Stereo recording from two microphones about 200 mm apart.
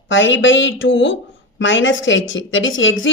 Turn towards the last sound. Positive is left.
turn(degrees=75)  # may be behind; listen again after turning